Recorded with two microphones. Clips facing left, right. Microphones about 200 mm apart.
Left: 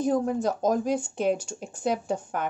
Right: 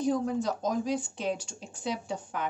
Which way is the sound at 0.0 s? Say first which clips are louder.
Left 3 dB; 50° left (ahead or behind).